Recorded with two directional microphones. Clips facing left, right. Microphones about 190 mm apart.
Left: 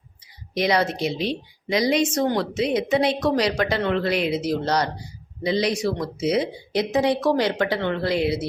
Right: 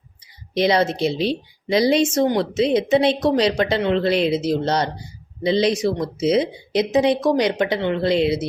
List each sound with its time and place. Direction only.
0.5 s a woman's voice: 25° right (ahead or behind)